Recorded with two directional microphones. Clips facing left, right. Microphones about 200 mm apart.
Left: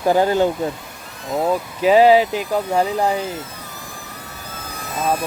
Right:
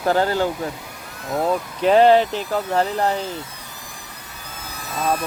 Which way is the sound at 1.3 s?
5° left (ahead or behind).